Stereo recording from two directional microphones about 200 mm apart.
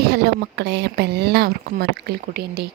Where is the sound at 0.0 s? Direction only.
50° right (ahead or behind).